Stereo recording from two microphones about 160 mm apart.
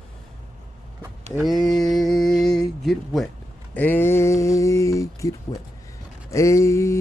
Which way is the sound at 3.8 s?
15° left (ahead or behind).